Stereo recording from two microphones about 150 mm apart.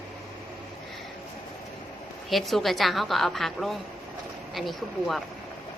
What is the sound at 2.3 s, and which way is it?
A woman's voice, centre (ahead or behind).